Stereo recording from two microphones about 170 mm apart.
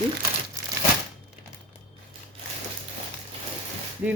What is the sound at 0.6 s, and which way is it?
Crumpling, 20° right (ahead or behind).